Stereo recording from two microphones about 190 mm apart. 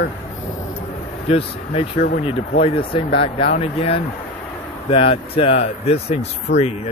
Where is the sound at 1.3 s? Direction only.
30° left (ahead or behind).